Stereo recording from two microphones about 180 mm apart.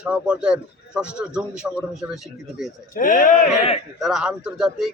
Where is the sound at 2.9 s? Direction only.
45° left (ahead or behind).